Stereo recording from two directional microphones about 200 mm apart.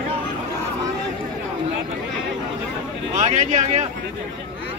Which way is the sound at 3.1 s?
40° right (ahead or behind).